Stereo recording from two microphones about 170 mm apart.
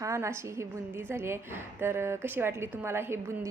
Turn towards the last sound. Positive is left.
turn(degrees=-15)  # may be behind; listen again after turning